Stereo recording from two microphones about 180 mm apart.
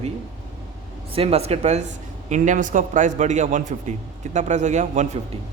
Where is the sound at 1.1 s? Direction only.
35° right (ahead or behind).